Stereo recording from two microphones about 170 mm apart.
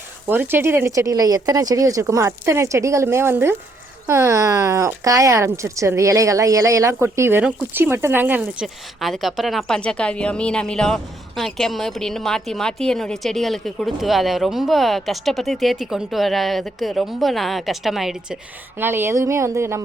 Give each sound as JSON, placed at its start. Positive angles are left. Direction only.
{"t": 0.3, "sound": "speech", "side_deg": -10}
{"t": 18.8, "sound": "speech", "side_deg": -15}